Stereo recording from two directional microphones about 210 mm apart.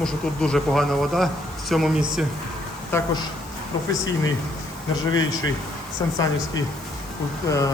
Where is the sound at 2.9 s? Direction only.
20° left (ahead or behind).